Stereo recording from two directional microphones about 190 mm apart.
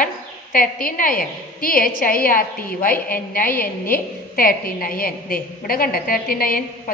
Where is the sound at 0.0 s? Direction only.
50° left (ahead or behind).